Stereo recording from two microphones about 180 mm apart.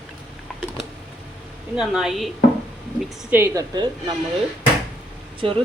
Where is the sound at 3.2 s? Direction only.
10° right (ahead or behind).